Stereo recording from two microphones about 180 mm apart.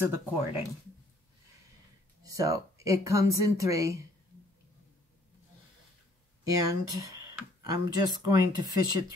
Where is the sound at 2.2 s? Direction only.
20° right (ahead or behind).